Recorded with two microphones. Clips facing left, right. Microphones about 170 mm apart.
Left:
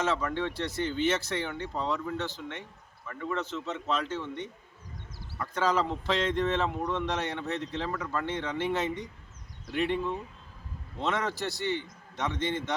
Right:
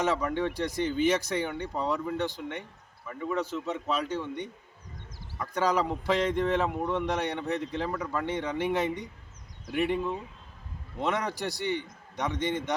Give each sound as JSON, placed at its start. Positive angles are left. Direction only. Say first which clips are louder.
{"t": 0.0, "sound": "speech", "louder": "right 2 dB", "side_deg": -15}